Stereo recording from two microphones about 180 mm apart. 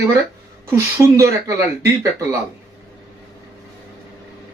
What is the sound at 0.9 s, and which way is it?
Speech, 15° right (ahead or behind).